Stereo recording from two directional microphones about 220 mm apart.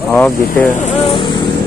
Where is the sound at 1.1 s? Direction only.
20° left (ahead or behind).